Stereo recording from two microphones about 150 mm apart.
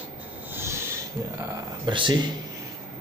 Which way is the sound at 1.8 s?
30° right (ahead or behind).